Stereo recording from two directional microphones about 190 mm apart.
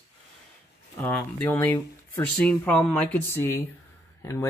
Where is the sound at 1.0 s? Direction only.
10° left (ahead or behind).